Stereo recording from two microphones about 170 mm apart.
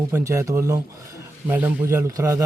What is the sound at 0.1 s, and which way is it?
A man's voice, 15° right (ahead or behind).